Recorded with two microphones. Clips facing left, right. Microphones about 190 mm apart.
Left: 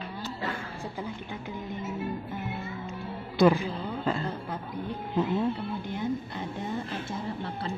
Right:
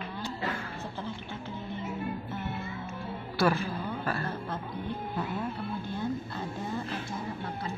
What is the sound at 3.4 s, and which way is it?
Speech, 15° left (ahead or behind).